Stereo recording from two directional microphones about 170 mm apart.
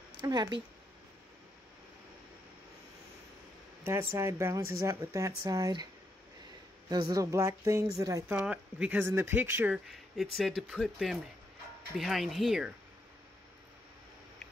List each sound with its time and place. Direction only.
0.2 s speech: 25° right (ahead or behind)
3.8 s speech: 15° right (ahead or behind)
6.9 s speech: 20° right (ahead or behind)
9.8 s speech: centre (ahead or behind)